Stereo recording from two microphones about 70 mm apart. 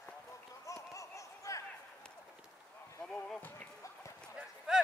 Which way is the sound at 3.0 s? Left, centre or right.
Centre.